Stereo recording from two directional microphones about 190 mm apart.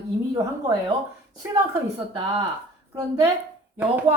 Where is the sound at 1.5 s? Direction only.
20° right (ahead or behind).